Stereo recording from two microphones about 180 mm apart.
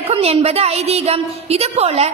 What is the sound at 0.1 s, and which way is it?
A woman's voice, 35° right (ahead or behind).